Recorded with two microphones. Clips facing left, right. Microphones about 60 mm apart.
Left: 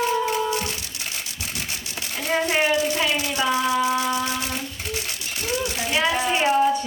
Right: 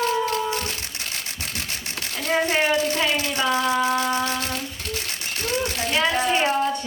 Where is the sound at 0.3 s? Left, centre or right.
Centre.